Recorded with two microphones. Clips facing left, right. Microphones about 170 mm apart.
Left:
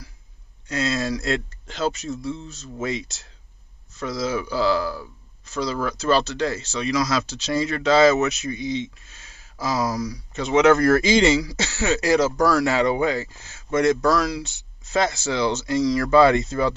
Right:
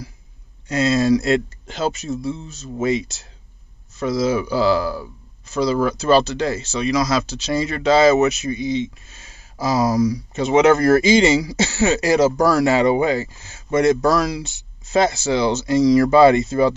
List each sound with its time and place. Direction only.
0.7 s speech: 10° right (ahead or behind)
9.6 s speech: 35° right (ahead or behind)
10.0 s speech: 10° right (ahead or behind)